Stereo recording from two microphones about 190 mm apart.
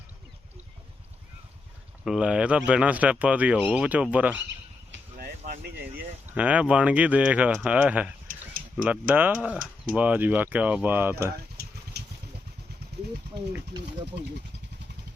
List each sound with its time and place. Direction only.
2.0 s speech: 5° right (ahead or behind)
5.1 s a sound: 50° right (ahead or behind)
6.3 s speech: 5° right (ahead or behind)
11.9 s vehicle: 60° right (ahead or behind)
13.7 s speech: 25° right (ahead or behind)